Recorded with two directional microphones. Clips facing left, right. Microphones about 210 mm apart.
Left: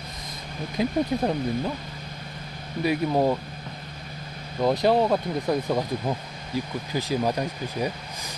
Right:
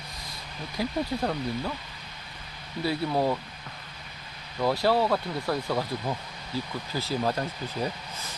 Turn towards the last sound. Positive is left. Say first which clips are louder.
# left 3 dB
turn(degrees=15)  # may be behind; listen again after turning